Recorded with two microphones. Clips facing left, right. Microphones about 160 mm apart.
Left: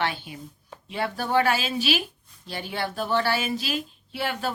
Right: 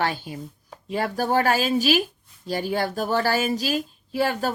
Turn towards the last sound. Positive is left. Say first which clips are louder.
# right 5 dB
turn(degrees=-40)  # may be behind; listen again after turning